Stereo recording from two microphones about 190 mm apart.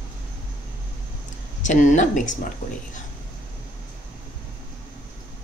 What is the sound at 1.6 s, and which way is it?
Speech, 40° left (ahead or behind).